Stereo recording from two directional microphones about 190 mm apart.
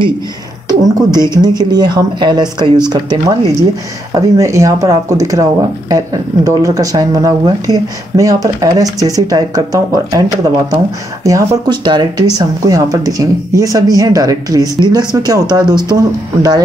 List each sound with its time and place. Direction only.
0.7 s speech: 20° right (ahead or behind)